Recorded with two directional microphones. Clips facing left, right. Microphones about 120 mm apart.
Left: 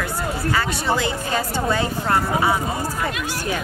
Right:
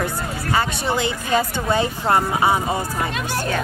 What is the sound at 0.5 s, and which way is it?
Speech, 20° right (ahead or behind).